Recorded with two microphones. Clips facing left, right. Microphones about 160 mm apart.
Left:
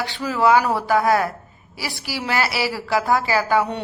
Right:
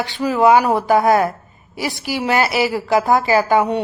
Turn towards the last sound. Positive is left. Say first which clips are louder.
# right 5 dB
turn(degrees=-15)  # may be behind; listen again after turning